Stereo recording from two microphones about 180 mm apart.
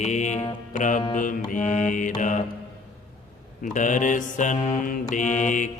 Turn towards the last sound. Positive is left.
turn(degrees=45)  # may be behind; listen again after turning